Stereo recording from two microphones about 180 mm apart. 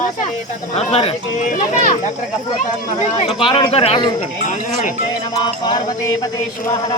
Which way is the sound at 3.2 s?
30° left (ahead or behind).